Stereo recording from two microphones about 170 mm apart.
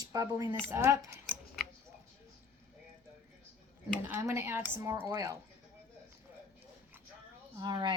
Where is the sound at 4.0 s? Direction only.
15° right (ahead or behind).